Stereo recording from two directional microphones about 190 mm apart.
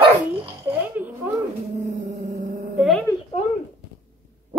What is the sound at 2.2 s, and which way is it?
Music, 40° right (ahead or behind).